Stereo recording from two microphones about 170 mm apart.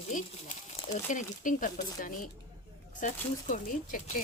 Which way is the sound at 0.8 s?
45° left (ahead or behind).